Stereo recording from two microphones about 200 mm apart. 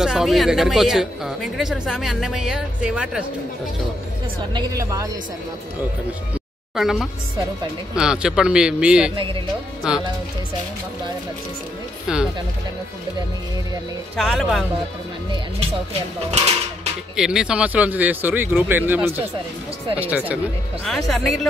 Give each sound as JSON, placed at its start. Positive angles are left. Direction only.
{"t": 0.0, "sound": "speech", "side_deg": 0}
{"t": 4.6, "sound": "speech", "side_deg": -15}
{"t": 6.7, "sound": "speech", "side_deg": 0}
{"t": 9.1, "sound": "speech", "side_deg": -25}
{"t": 9.8, "sound": "speech", "side_deg": -5}
{"t": 12.1, "sound": "speech", "side_deg": -5}
{"t": 14.1, "sound": "speech", "side_deg": 0}
{"t": 17.2, "sound": "speech", "side_deg": -5}
{"t": 20.8, "sound": "speech", "side_deg": 0}